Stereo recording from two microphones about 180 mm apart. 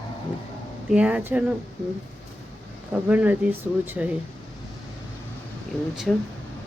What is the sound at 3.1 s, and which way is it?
Speech, 10° right (ahead or behind).